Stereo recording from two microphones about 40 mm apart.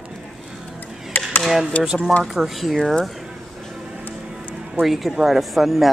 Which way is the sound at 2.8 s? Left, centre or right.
Centre.